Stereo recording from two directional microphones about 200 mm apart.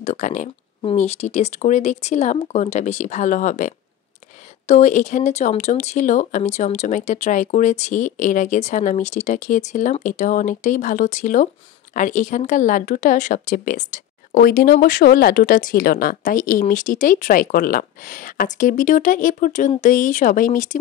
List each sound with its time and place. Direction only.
0.0 s speech: 40° left (ahead or behind)